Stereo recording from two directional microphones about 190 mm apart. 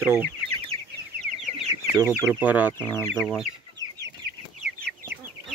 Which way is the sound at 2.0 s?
10° right (ahead or behind).